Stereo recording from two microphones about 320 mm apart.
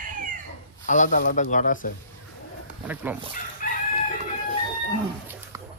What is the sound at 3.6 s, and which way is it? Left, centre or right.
Chicken, left.